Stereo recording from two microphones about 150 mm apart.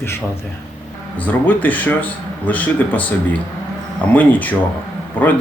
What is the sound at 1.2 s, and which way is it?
A man's voice, 10° left (ahead or behind).